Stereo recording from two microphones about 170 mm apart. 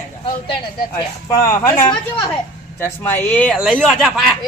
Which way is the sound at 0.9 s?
20° left (ahead or behind).